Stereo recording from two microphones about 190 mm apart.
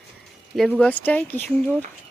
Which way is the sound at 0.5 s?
Centre (ahead or behind).